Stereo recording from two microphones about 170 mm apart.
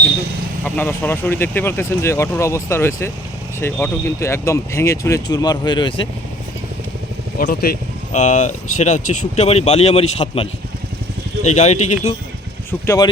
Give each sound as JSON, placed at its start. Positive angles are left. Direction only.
{"t": 0.6, "sound": "speech", "side_deg": 10}
{"t": 7.3, "sound": "speech", "side_deg": 60}
{"t": 8.1, "sound": "speech", "side_deg": 45}
{"t": 12.8, "sound": "speech", "side_deg": 15}